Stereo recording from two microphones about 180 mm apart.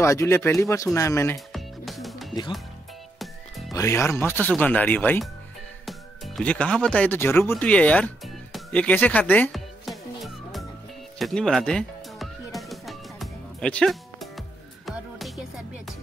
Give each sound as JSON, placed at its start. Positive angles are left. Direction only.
{"t": 0.0, "sound": "speech", "side_deg": 15}
{"t": 1.5, "sound": "music", "side_deg": 0}
{"t": 3.7, "sound": "speech", "side_deg": 15}
{"t": 9.5, "sound": "music", "side_deg": 0}
{"t": 11.1, "sound": "speech", "side_deg": 0}
{"t": 12.5, "sound": "music", "side_deg": 0}